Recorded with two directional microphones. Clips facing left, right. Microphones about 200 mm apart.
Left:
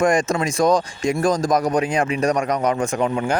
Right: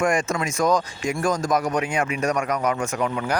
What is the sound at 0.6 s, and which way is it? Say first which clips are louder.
Speech: left 3 dB; 35° left (ahead or behind).